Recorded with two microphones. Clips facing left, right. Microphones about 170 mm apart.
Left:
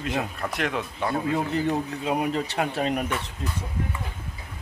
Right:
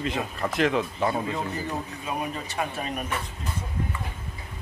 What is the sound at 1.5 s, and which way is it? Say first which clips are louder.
Speech: left 7 dB; 70° left (ahead or behind).